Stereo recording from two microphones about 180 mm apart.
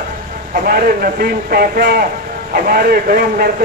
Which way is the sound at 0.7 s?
55° right (ahead or behind).